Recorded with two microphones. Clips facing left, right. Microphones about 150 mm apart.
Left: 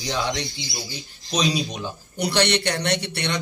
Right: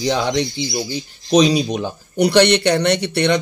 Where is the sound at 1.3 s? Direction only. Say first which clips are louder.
Right 10 dB; 55° right (ahead or behind).